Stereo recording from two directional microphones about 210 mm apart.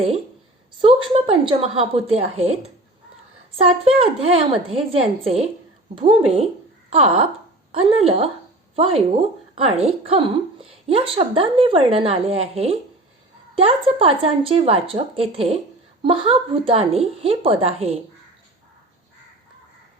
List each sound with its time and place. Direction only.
0.8 s a woman's voice: 25° right (ahead or behind)